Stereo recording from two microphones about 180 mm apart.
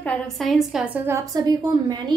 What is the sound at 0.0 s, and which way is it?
A woman's voice, 5° left (ahead or behind).